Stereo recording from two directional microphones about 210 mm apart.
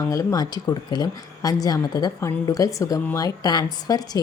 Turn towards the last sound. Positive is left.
turn(degrees=20)  # may be behind; listen again after turning